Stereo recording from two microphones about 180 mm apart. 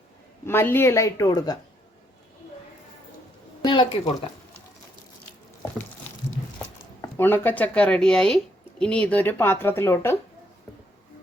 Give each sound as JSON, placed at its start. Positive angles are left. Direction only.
{"t": 0.4, "sound": "a woman's voice", "side_deg": 10}
{"t": 3.6, "sound": "speech", "side_deg": 25}
{"t": 6.6, "sound": "a woman's voice", "side_deg": 10}